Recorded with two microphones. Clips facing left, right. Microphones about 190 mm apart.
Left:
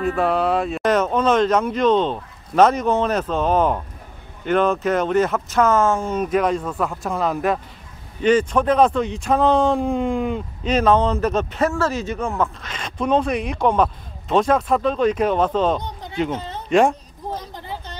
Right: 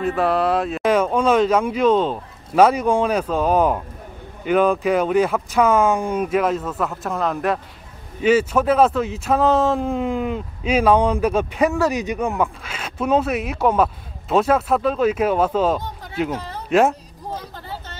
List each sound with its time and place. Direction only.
0.0 s speech: centre (ahead or behind)
16.3 s speech: 20° left (ahead or behind)
16.6 s a woman's voice: 5° right (ahead or behind)
17.3 s vehicle: 15° left (ahead or behind)